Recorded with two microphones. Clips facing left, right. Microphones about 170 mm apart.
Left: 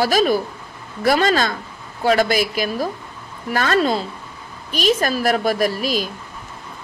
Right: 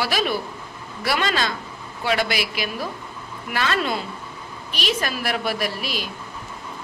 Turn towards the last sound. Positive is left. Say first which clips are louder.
# left 7 dB
turn(degrees=40)  # may be behind; listen again after turning